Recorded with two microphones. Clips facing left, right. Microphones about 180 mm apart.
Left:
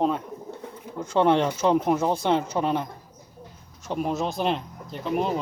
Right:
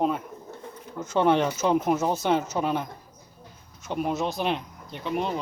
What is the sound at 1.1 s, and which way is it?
Speech, 25° left (ahead or behind).